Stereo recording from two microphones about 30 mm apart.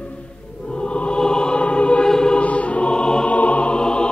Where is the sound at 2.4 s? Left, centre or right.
Left.